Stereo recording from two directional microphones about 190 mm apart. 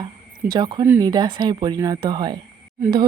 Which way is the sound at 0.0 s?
20° right (ahead or behind).